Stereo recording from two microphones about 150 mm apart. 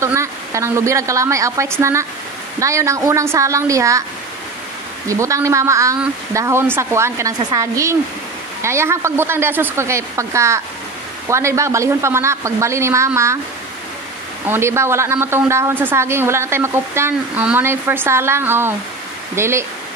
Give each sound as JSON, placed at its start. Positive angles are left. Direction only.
{"t": 0.0, "sound": "a woman's voice", "side_deg": -20}
{"t": 5.0, "sound": "a woman's voice", "side_deg": -20}
{"t": 14.4, "sound": "a woman's voice", "side_deg": -15}